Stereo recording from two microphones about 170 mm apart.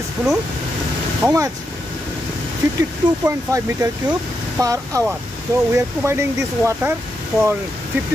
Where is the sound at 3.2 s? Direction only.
15° right (ahead or behind).